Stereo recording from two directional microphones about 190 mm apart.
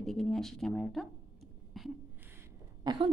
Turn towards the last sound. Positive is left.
turn(degrees=-25)  # may be behind; listen again after turning